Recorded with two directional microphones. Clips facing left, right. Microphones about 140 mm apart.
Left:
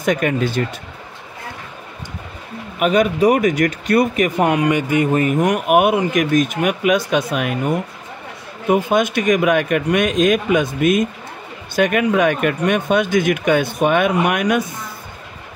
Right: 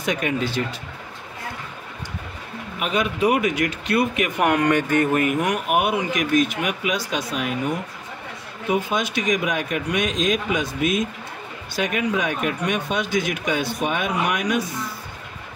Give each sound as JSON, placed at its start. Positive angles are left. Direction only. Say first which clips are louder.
{"t": 0.0, "sound": "speech", "louder": "left 6 dB", "side_deg": 50}
{"t": 2.8, "sound": "speech", "louder": "left 7 dB", "side_deg": 45}
{"t": 4.6, "sound": "speech", "louder": "left 2 dB", "side_deg": 10}
{"t": 5.4, "sound": "speech", "louder": "left 7 dB", "side_deg": 50}